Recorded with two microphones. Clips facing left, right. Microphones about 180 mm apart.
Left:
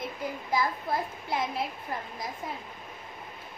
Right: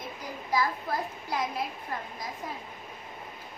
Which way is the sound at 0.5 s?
25° left (ahead or behind).